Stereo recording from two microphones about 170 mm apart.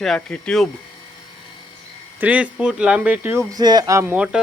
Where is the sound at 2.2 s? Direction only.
10° right (ahead or behind).